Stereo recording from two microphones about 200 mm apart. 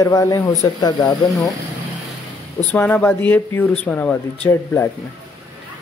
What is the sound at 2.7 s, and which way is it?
Speech, 10° left (ahead or behind).